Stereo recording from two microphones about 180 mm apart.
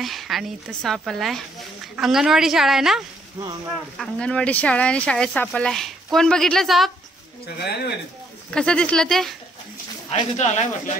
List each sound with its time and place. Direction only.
0.0 s speech: centre (ahead or behind)
4.0 s speech: 5° left (ahead or behind)
7.4 s speech: 65° left (ahead or behind)
8.5 s speech: 5° left (ahead or behind)
10.0 s speech: 35° left (ahead or behind)